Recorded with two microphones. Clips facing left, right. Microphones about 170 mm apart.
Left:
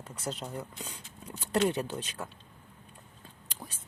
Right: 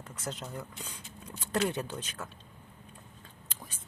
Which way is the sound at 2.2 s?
15° left (ahead or behind).